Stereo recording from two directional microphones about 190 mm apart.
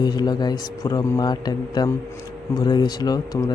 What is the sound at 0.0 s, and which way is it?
Speech, 20° left (ahead or behind).